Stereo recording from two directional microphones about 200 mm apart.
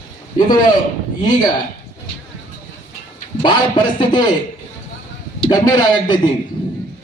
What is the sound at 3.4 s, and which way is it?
Speech, 20° left (ahead or behind).